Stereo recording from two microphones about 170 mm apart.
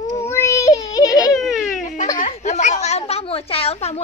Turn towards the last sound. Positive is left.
turn(degrees=40)  # may be behind; listen again after turning